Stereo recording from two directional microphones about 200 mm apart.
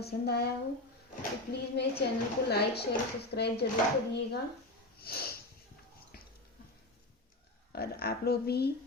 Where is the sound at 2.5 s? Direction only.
55° left (ahead or behind).